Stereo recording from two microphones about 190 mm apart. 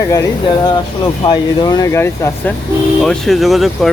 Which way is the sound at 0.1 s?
20° left (ahead or behind).